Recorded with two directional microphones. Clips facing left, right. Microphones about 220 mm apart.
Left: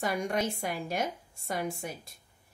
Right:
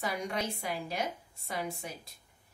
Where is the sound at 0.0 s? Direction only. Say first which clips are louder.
Left 4 dB; 50° left (ahead or behind).